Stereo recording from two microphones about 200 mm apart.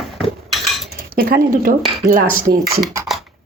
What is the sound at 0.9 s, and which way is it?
Cutlery, 45° right (ahead or behind).